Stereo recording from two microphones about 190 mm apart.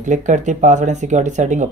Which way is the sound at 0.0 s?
40° right (ahead or behind).